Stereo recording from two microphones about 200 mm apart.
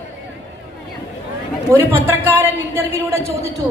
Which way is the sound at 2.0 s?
10° right (ahead or behind).